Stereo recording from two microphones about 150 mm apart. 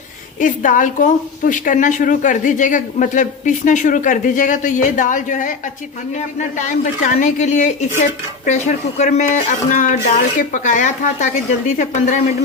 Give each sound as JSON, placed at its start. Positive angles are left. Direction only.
{"t": 0.3, "sound": "a woman's voice", "side_deg": 60}